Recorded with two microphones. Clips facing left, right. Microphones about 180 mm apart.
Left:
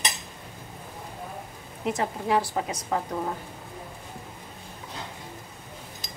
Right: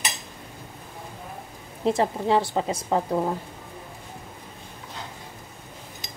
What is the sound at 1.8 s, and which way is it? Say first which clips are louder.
A woman's voice: right 5 dB; 30° right (ahead or behind).